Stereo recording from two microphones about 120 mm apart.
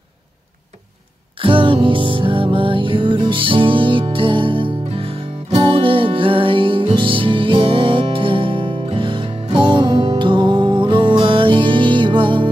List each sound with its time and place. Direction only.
1.4 s music: 45° right (ahead or behind)